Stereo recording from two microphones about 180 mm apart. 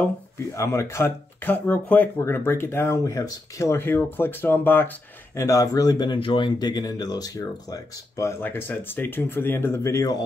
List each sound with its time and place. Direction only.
0.6 s speech: 15° left (ahead or behind)